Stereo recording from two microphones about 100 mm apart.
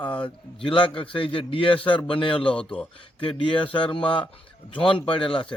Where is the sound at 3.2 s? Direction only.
60° left (ahead or behind).